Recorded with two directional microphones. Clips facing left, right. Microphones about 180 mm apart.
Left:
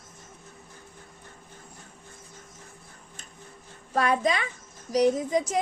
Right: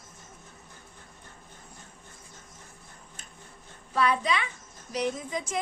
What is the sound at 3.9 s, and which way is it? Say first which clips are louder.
A woman's voice: left 2 dB; 45° left (ahead or behind).